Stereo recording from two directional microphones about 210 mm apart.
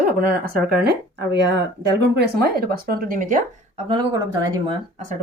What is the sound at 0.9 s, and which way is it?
Speech, 55° right (ahead or behind).